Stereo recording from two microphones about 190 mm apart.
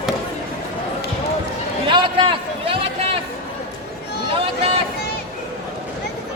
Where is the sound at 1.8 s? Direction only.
25° right (ahead or behind).